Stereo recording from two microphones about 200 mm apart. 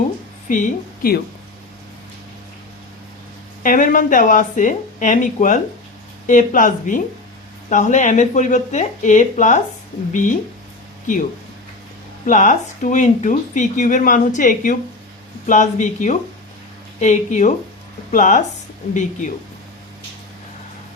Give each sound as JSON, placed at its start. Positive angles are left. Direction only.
{"t": 0.4, "sound": "speech", "side_deg": 40}
{"t": 3.6, "sound": "speech", "side_deg": 45}